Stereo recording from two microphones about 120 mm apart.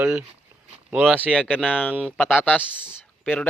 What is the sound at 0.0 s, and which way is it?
Speech, 20° right (ahead or behind).